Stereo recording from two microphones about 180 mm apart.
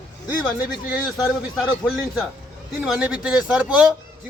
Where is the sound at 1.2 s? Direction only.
5° right (ahead or behind).